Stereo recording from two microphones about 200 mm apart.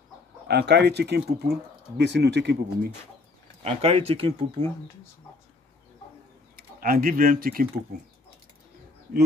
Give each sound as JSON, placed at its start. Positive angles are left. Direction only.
{"t": 0.5, "sound": "speech", "side_deg": -55}
{"t": 3.6, "sound": "speech", "side_deg": -30}
{"t": 6.5, "sound": "speech", "side_deg": -45}